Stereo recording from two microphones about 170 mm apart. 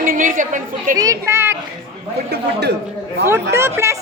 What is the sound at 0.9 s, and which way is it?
Speech, 20° right (ahead or behind).